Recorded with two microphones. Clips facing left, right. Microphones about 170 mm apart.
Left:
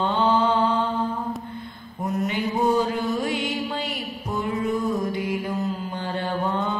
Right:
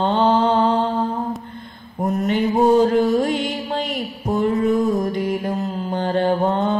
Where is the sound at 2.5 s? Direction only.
20° right (ahead or behind).